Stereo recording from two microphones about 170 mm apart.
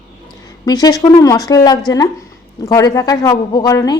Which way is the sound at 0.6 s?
25° left (ahead or behind).